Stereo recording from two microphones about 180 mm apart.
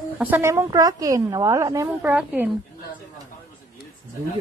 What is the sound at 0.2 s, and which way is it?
Speech, 15° right (ahead or behind).